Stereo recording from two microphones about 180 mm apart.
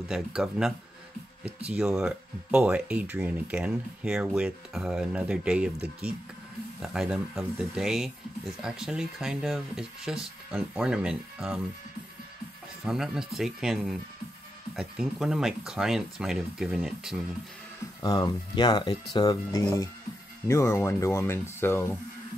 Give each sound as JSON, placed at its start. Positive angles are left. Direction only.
{"t": 0.1, "sound": "speech", "side_deg": 0}
{"t": 12.8, "sound": "speech", "side_deg": -5}
{"t": 18.0, "sound": "speech", "side_deg": 25}